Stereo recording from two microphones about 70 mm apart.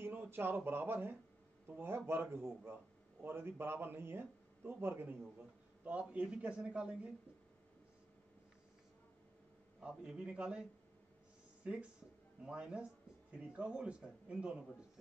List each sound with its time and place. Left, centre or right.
0.0 s a man's voice: right
5.2 s speech: centre
9.8 s speech: centre